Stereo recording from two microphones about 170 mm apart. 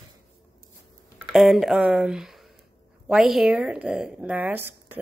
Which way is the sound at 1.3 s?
Centre (ahead or behind).